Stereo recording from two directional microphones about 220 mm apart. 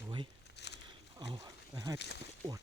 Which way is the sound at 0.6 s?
50° left (ahead or behind).